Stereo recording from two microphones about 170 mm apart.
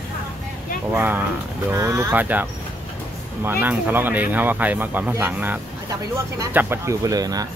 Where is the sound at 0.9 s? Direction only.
10° right (ahead or behind).